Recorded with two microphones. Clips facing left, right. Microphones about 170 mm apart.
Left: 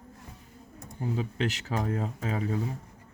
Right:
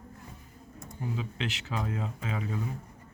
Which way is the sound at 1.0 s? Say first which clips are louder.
Left 5 dB; 40° left (ahead or behind).